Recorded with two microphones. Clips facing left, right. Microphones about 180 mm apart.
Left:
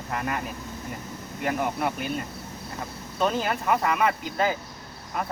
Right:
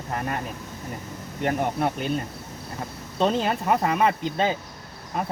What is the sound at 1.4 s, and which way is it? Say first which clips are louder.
Speech: right 2 dB; 35° right (ahead or behind).